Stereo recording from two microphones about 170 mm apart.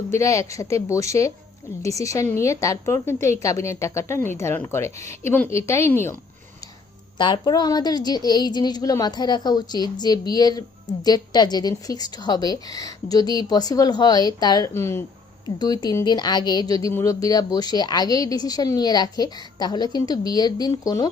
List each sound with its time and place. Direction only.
0.1 s speech: 15° left (ahead or behind)
7.2 s speech: 25° left (ahead or behind)